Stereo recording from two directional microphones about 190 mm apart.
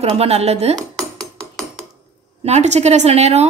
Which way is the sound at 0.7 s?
Centre (ahead or behind).